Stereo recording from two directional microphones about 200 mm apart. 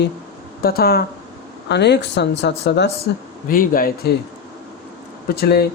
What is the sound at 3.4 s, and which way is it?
Speech, 45° left (ahead or behind).